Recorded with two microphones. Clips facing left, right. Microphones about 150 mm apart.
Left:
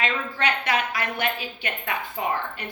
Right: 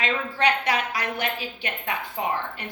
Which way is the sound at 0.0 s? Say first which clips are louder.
Right 2 dB; 35° right (ahead or behind).